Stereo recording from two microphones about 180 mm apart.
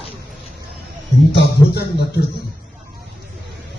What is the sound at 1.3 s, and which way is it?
Speech, 65° left (ahead or behind).